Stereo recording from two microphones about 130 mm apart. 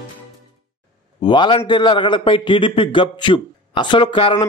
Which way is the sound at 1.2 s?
40° left (ahead or behind).